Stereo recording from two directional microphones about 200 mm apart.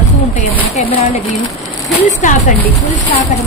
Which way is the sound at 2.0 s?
35° left (ahead or behind).